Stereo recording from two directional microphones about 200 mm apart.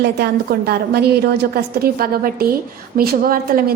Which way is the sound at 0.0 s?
55° right (ahead or behind).